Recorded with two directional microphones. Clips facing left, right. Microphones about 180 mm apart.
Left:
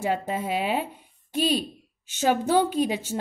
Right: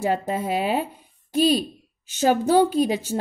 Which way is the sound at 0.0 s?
40° right (ahead or behind).